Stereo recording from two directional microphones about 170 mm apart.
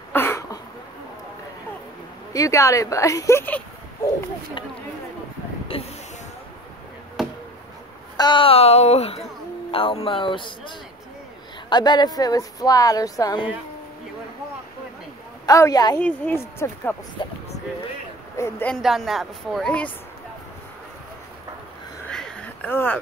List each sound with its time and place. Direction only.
0.1 s a sound: 15° left (ahead or behind)
2.3 s speech: 20° left (ahead or behind)
5.7 s a sound: 35° left (ahead or behind)
7.2 s chop: centre (ahead or behind)
8.2 s a woman's voice: 30° left (ahead or behind)
11.7 s speech: 25° left (ahead or behind)
15.4 s speech: 20° left (ahead or behind)
16.0 s speech: 10° left (ahead or behind)
17.2 s speech: 30° left (ahead or behind)
18.3 s a woman's voice: 15° left (ahead or behind)
18.7 s a woman's voice: centre (ahead or behind)
22.1 s a sound: 5° left (ahead or behind)